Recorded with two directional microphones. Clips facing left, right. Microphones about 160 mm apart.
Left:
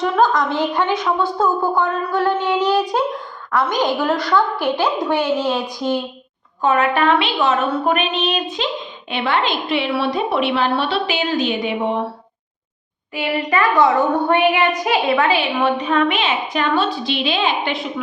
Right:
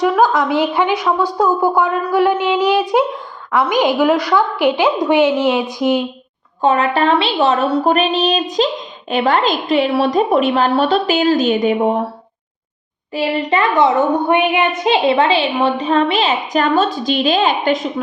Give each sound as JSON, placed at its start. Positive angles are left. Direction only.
{"t": 0.0, "sound": "a woman's voice", "side_deg": -10}
{"t": 6.6, "sound": "a woman's voice", "side_deg": -30}
{"t": 13.1, "sound": "a woman's voice", "side_deg": -30}